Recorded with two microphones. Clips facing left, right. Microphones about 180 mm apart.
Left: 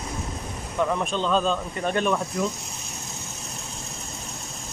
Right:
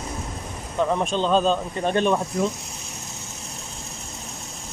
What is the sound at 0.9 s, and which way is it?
Speech, 25° right (ahead or behind).